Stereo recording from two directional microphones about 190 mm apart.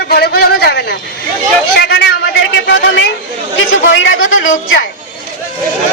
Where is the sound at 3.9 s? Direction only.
80° left.